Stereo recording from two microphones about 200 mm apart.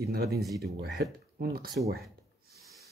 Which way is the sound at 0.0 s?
50° right (ahead or behind).